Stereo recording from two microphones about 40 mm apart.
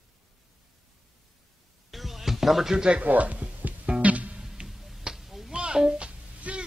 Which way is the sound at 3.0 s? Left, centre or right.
Right.